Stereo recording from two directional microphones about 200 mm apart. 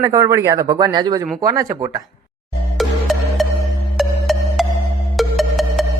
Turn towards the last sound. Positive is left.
turn(degrees=0)  # may be behind; listen again after turning